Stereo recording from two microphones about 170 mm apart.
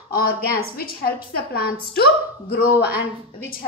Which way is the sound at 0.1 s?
60° left (ahead or behind).